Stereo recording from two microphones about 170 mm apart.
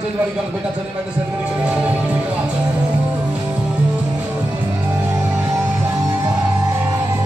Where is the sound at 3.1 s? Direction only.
10° right (ahead or behind).